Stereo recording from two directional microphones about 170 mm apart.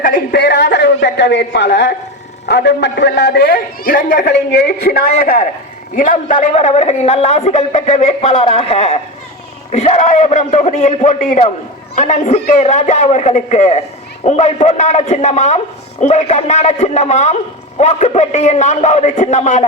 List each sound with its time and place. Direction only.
0.0 s a sound: 60° left (ahead or behind); by 0.9 s 80° left
1.0 s a man's voice: 90° left; by 4.3 s 55° left (ahead or behind)
4.3 s a man's voice: 80° left; by 5.5 s 60° left (ahead or behind)
6.0 s a man's voice: 50° left (ahead or behind)
8.2 s a man's voice: 30° left (ahead or behind)